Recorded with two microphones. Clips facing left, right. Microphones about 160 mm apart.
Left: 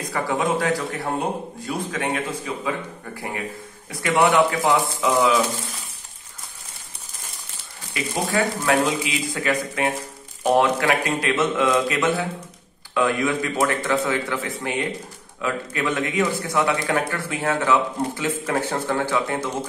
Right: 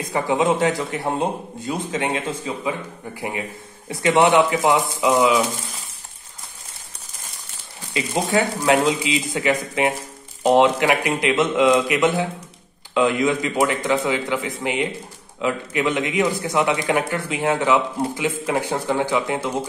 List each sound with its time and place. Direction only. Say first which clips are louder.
0.1 s a man's voice: right 4 dB; 20° right (ahead or behind)
7.9 s a man's voice: right 3 dB; 20° right (ahead or behind)